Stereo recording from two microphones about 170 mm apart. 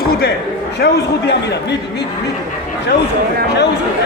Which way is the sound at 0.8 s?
80° left.